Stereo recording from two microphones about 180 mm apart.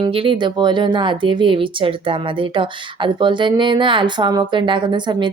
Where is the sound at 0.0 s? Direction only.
30° right (ahead or behind).